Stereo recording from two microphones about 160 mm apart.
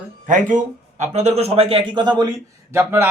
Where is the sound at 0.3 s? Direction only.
55° right (ahead or behind); by 2.3 s 25° right (ahead or behind).